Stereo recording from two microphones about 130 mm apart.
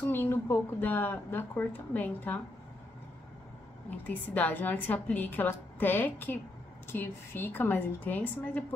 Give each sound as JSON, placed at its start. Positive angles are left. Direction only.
{"t": 0.1, "sound": "speech", "side_deg": 15}
{"t": 4.0, "sound": "speech", "side_deg": 10}